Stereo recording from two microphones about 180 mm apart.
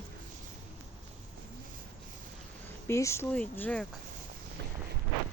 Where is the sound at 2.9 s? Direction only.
15° left (ahead or behind).